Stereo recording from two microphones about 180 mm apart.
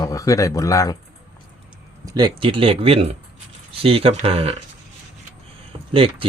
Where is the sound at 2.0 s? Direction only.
20° right (ahead or behind).